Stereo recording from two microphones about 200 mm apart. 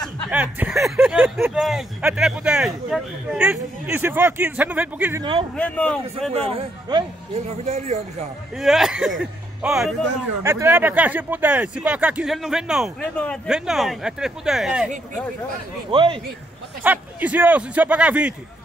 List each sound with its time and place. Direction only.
0.0 s speech: 10° right (ahead or behind)
5.6 s a man's voice: 5° left (ahead or behind)
6.3 s a man's voice: 30° right (ahead or behind)
8.5 s speech: centre (ahead or behind)
10.4 s speech: 15° right (ahead or behind)
15.9 s speech: 25° right (ahead or behind)
16.8 s speech: 10° right (ahead or behind)